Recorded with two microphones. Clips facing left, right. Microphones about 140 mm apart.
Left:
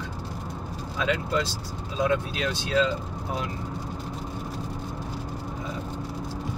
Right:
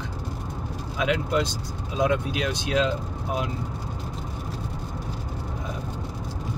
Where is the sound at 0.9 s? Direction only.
15° right (ahead or behind).